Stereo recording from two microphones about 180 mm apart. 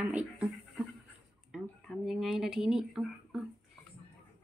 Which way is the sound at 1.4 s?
Centre (ahead or behind).